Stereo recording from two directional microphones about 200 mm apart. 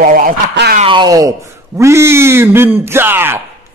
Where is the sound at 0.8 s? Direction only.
20° right (ahead or behind).